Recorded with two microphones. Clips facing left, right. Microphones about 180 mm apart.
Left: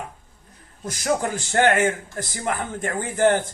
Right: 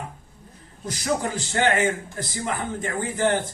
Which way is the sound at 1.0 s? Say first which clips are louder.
Left 2 dB; 55° left (ahead or behind).